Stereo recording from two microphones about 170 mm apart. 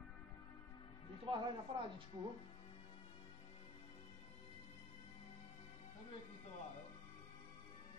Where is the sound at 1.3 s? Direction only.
30° right (ahead or behind).